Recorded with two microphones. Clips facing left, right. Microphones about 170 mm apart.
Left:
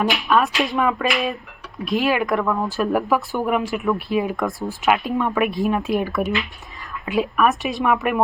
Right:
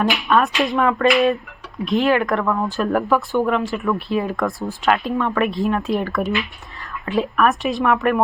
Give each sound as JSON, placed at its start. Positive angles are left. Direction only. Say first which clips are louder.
{"t": 0.1, "sound": "speech", "louder": "right 1 dB", "side_deg": 0}
{"t": 4.4, "sound": "speech", "louder": "right 1 dB", "side_deg": 0}
{"t": 5.1, "sound": "speech", "louder": "even", "side_deg": 15}
{"t": 5.9, "sound": "speech", "louder": "even", "side_deg": 5}